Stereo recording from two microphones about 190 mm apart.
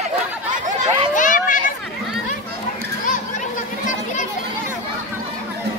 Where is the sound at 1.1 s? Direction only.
45° left (ahead or behind).